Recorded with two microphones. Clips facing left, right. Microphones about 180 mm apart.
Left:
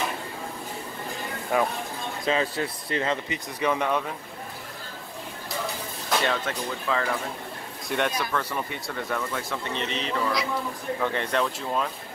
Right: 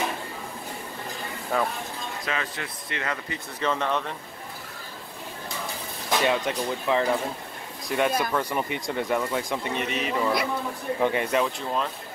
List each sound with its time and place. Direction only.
1.5 s speech: 10° left (ahead or behind)
2.2 s speech: 30° left (ahead or behind)
3.6 s speech: 10° left (ahead or behind)
6.0 s speech: 15° right (ahead or behind)
7.9 s speech: 5° right (ahead or behind)
8.3 s speech: 15° right (ahead or behind); by 11.9 s centre (ahead or behind)